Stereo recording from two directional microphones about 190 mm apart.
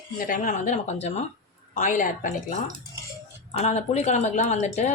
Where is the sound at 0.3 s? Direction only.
45° left (ahead or behind).